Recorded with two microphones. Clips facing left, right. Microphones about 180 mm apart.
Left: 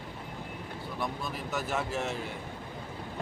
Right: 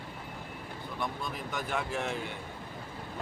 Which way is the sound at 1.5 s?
5° left (ahead or behind).